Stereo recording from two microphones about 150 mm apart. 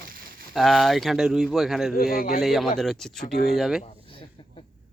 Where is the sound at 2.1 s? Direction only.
75° left (ahead or behind).